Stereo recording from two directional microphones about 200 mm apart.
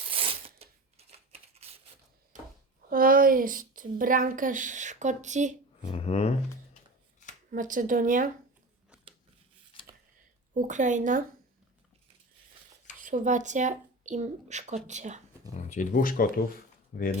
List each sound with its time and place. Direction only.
0.1 s a sound: 25° right (ahead or behind)
2.9 s speech: 45° right (ahead or behind)
5.8 s speech: 30° left (ahead or behind)
7.5 s speech: 40° right (ahead or behind)
10.5 s speech: 40° right (ahead or behind)
13.0 s speech: 40° right (ahead or behind)
15.5 s speech: 35° left (ahead or behind)